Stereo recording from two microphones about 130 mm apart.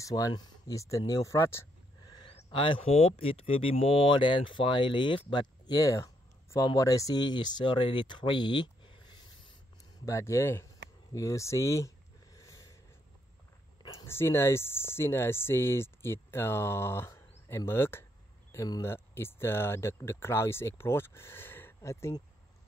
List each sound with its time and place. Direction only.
0.0 s speech: 30° left (ahead or behind)
2.5 s speech: 40° left (ahead or behind)
10.0 s speech: 25° left (ahead or behind)
11.1 s a sound: 25° left (ahead or behind)
14.0 s speech: 20° left (ahead or behind)